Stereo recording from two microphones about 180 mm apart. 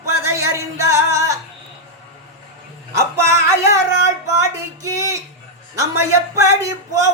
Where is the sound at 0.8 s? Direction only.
15° right (ahead or behind).